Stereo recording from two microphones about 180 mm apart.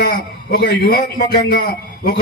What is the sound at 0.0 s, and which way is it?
A man's voice, 55° left (ahead or behind).